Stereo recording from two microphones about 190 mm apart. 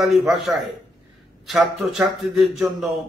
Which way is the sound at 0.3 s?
Centre (ahead or behind).